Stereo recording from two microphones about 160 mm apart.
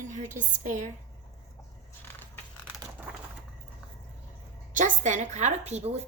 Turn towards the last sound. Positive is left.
turn(degrees=-45)  # may be behind; listen again after turning